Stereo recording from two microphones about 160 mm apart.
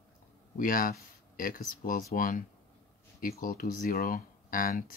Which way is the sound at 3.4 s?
55° left (ahead or behind).